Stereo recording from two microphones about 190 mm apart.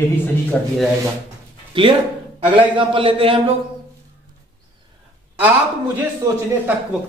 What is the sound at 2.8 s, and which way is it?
Speech, 25° right (ahead or behind).